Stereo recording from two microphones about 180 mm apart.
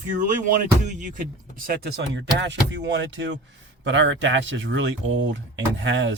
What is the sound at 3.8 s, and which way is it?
Speech, 90° right.